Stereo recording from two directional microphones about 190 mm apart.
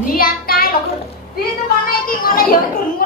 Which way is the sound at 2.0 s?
50° left (ahead or behind).